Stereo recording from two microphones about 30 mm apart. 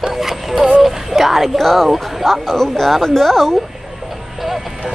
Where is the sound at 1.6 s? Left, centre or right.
Centre.